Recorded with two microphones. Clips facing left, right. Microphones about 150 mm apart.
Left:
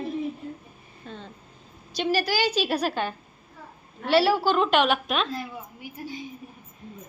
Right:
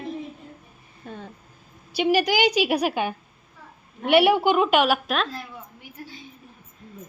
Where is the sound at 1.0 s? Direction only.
10° right (ahead or behind).